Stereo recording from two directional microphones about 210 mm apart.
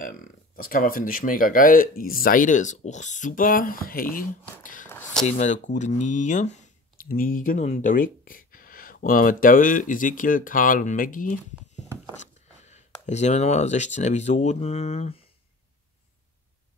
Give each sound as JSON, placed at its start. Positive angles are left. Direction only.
{"t": 0.6, "sound": "speech", "side_deg": 40}